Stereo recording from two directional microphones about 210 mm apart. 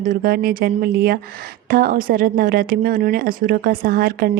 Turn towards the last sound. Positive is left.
turn(degrees=-45)  # may be behind; listen again after turning